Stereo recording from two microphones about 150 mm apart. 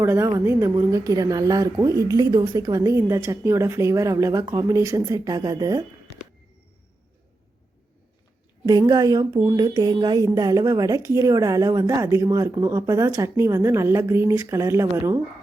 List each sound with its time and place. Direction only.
0.0 s a woman's voice: 15° right (ahead or behind)
8.6 s a woman's voice: 25° right (ahead or behind)